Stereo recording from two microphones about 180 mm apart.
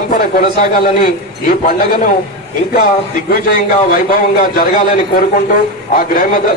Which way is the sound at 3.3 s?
50° left (ahead or behind).